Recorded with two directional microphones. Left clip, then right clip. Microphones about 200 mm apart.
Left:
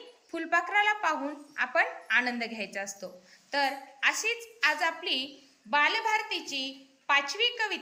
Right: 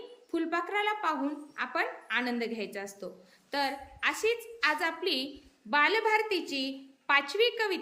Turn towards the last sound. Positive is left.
turn(degrees=-10)  # may be behind; listen again after turning